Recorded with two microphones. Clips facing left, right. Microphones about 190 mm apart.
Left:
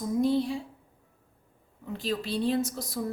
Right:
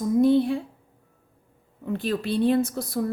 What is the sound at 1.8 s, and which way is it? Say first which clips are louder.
Speech: right 5 dB; 60° right (ahead or behind).